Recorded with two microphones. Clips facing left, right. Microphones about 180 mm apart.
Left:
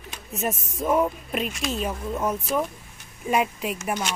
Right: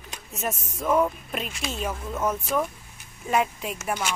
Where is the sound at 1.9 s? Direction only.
15° left (ahead or behind).